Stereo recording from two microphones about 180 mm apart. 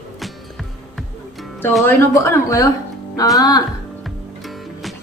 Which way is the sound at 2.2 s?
15° left (ahead or behind).